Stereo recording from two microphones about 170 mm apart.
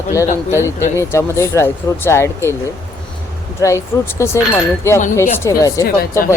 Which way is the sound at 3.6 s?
15° left (ahead or behind).